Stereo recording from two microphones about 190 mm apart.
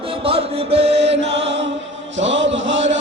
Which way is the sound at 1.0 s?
65° right (ahead or behind).